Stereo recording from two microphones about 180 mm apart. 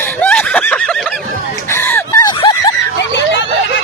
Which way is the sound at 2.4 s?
25° left (ahead or behind).